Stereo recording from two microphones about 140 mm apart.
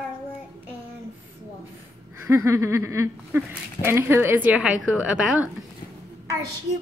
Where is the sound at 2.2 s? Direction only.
20° right (ahead or behind).